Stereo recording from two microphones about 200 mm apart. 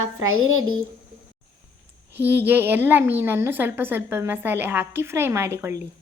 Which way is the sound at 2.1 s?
10° right (ahead or behind).